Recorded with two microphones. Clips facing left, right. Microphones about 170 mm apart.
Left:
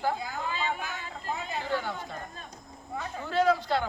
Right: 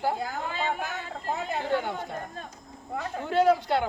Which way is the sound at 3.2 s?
15° right (ahead or behind).